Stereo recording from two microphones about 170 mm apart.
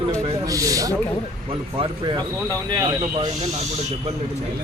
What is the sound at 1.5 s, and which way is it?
Speech, 30° right (ahead or behind).